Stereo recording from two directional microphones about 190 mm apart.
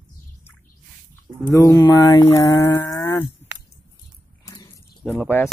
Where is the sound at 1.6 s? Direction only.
20° left (ahead or behind).